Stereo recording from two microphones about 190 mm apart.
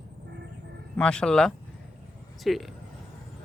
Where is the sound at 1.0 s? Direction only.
5° left (ahead or behind).